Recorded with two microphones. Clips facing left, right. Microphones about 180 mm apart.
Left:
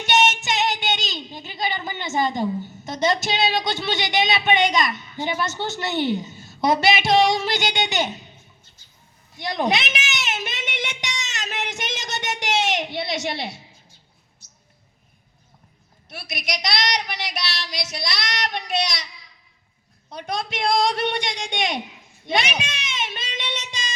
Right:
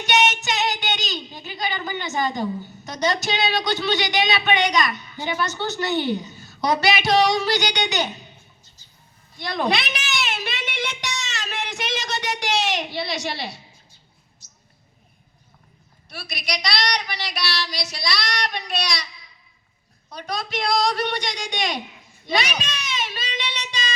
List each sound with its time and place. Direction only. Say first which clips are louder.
0.0 s child singing: left 1 dB; 25° left (ahead or behind)
9.4 s a sound: left 1 dB; 20° left (ahead or behind)
14.4 s mouse: even; 60° left (ahead or behind)
16.6 s child singing: even; 25° left (ahead or behind)
20.1 s a woman's voice: left 1 dB; 25° left (ahead or behind)
20.5 s female singing: left 1 dB; 50° left (ahead or behind)
22.3 s female singing: even; 50° left (ahead or behind)
22.6 s a sound: right 1 dB; 50° left (ahead or behind)
23.4 s child singing: left 1 dB; 50° left (ahead or behind)